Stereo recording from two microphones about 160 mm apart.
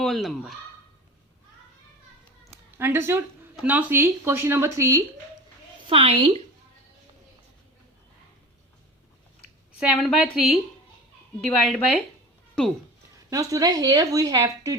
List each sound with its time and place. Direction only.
0.0 s a woman's voice: centre (ahead or behind)
2.7 s speech: 15° right (ahead or behind)
5.8 s a woman's voice: 35° right (ahead or behind)
9.8 s a woman's voice: centre (ahead or behind)
13.3 s speech: 20° right (ahead or behind)